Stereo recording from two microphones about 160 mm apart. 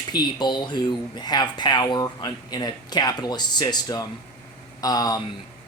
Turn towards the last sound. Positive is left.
turn(degrees=25)  # may be behind; listen again after turning